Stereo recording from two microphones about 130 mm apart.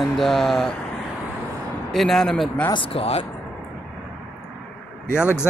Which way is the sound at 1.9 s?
Centre (ahead or behind).